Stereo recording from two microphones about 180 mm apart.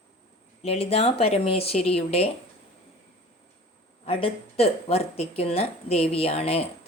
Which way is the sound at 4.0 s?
30° left (ahead or behind).